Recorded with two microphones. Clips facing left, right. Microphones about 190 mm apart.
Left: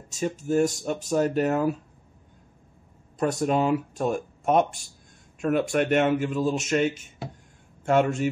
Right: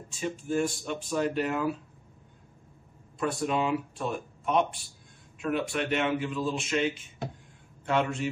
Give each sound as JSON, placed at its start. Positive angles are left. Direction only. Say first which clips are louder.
{"t": 0.1, "sound": "speech", "louder": "left 5 dB", "side_deg": 40}
{"t": 3.2, "sound": "speech", "louder": "left 5 dB", "side_deg": 40}